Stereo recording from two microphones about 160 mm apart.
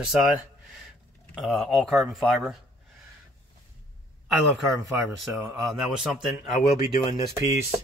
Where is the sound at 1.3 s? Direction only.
Centre (ahead or behind).